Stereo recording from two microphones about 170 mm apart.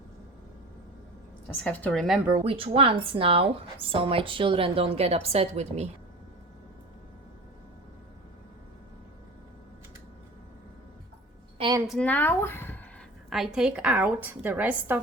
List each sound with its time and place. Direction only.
1.6 s a woman's voice: 5° left (ahead or behind)
2.4 s a woman's voice: 35° right (ahead or behind)
11.5 s a sound: 30° right (ahead or behind)
11.9 s speech: 5° left (ahead or behind)
13.3 s a woman's voice: 5° right (ahead or behind)